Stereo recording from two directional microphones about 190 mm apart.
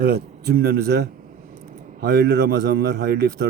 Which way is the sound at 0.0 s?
55° right (ahead or behind).